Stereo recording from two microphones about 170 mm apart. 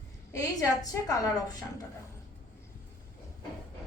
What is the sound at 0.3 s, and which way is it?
A woman's voice, 20° left (ahead or behind).